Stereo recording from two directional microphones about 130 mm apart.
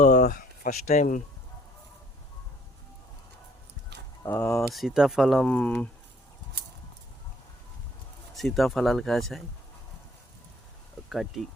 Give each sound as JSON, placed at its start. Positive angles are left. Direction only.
{"t": 0.0, "sound": "speech", "side_deg": 85}
{"t": 4.2, "sound": "speech", "side_deg": 20}
{"t": 4.7, "sound": "speech", "side_deg": -5}
{"t": 8.4, "sound": "speech", "side_deg": 0}
{"t": 11.1, "sound": "speech", "side_deg": 0}